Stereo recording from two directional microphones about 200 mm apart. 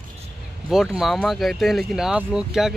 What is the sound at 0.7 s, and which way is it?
Speech, centre (ahead or behind).